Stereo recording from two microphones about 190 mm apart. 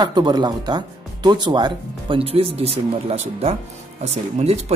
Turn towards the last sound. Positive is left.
turn(degrees=-35)  # may be behind; listen again after turning